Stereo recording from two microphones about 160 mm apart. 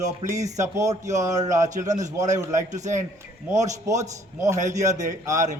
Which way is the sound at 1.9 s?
50° right (ahead or behind).